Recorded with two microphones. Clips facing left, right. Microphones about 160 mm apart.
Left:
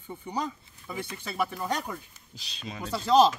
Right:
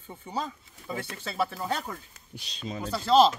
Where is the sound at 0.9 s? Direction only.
20° right (ahead or behind).